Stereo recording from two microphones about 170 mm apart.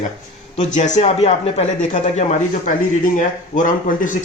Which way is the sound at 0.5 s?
45° left (ahead or behind).